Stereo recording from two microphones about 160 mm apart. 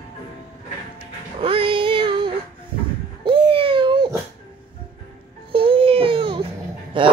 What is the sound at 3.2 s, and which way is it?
Babbling, 30° right (ahead or behind).